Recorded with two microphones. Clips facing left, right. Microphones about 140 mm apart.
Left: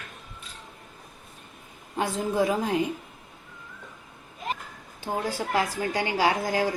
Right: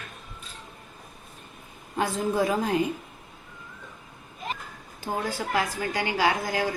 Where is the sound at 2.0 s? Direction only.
20° left (ahead or behind).